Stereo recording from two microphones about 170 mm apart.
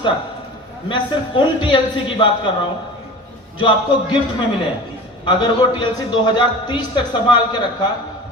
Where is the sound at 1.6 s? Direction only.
30° left (ahead or behind).